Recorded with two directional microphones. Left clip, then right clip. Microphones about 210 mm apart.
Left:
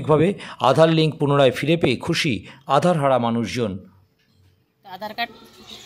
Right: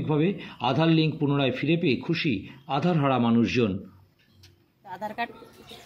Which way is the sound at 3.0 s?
30° left (ahead or behind).